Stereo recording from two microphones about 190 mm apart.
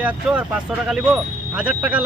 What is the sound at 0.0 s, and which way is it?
A man's voice, 5° right (ahead or behind).